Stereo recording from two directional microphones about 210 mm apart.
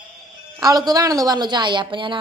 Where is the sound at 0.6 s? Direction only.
15° right (ahead or behind).